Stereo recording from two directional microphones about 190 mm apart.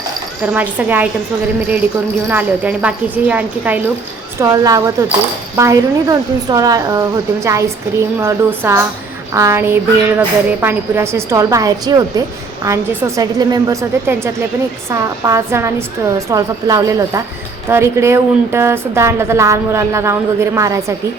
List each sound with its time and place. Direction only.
0.5 s a woman's voice: 10° right (ahead or behind)
2.3 s a woman's voice: 10° right (ahead or behind)